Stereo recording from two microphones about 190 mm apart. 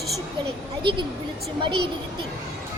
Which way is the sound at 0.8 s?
25° right (ahead or behind).